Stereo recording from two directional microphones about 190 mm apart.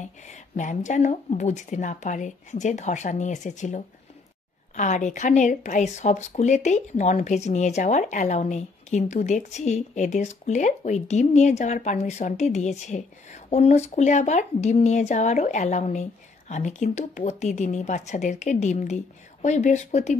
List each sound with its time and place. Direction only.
0.0 s speech: 40° left (ahead or behind)